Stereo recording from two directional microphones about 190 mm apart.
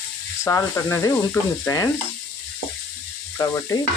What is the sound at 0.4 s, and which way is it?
Speech, 15° left (ahead or behind).